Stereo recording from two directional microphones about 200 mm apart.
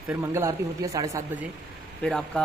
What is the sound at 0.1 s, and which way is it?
Speech, 15° right (ahead or behind).